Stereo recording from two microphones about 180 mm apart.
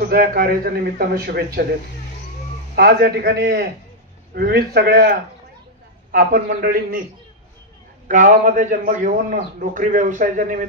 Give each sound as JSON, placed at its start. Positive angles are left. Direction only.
{"t": 0.0, "sound": "a man's voice", "side_deg": -55}
{"t": 6.1, "sound": "a man's voice", "side_deg": -55}
{"t": 8.1, "sound": "a man's voice", "side_deg": -50}